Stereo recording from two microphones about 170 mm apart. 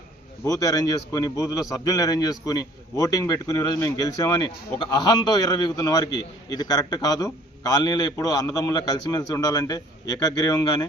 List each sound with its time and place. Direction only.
0.4 s a man's voice: 20° left (ahead or behind)